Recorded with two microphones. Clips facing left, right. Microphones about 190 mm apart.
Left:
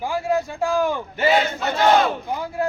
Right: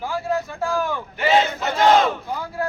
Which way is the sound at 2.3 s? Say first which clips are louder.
Left 2 dB; 20° left (ahead or behind).